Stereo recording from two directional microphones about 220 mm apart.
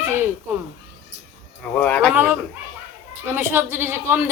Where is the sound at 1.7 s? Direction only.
5° left (ahead or behind).